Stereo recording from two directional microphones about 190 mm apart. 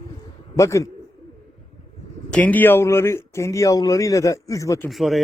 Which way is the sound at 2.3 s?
5° left (ahead or behind).